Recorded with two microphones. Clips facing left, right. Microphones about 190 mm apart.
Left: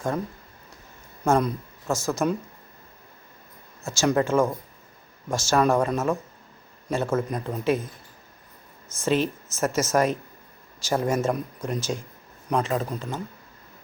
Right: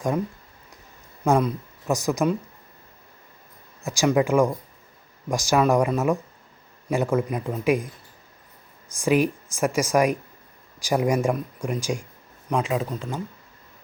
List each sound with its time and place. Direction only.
1.2 s speech: centre (ahead or behind)
1.9 s speech: 15° right (ahead or behind)
3.8 s speech: 10° right (ahead or behind)
9.0 s speech: 15° right (ahead or behind)
12.5 s speech: centre (ahead or behind)